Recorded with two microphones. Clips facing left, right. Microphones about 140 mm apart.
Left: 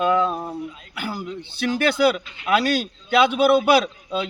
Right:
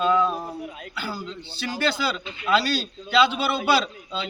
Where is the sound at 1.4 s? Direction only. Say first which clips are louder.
Left 6 dB; 55° left (ahead or behind).